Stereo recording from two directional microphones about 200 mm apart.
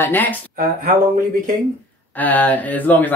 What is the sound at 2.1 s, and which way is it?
Speech, 10° left (ahead or behind).